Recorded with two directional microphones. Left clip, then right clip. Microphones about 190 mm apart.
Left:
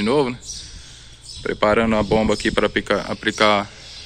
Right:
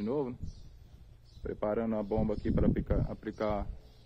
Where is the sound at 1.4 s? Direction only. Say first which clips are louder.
Left 16 dB; 10° left (ahead or behind).